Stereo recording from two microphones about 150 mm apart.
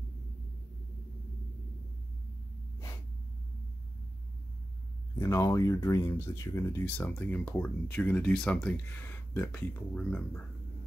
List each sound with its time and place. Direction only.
5.2 s speech: 20° left (ahead or behind)